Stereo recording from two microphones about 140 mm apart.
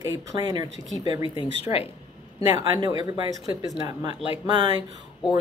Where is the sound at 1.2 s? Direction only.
40° left (ahead or behind).